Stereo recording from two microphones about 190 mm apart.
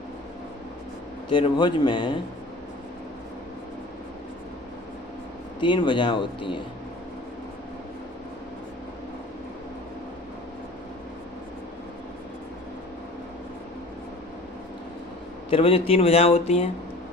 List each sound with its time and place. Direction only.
1.3 s speech: 25° left (ahead or behind)
5.5 s speech: 25° left (ahead or behind)
15.4 s speech: 30° left (ahead or behind)